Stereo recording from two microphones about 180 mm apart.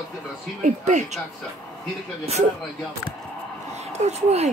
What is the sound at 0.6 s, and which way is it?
Speech, 40° right (ahead or behind).